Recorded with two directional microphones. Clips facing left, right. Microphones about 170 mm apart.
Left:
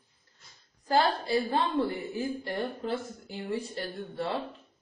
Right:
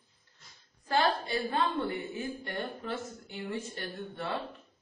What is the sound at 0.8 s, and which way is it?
A woman's voice, 35° left (ahead or behind).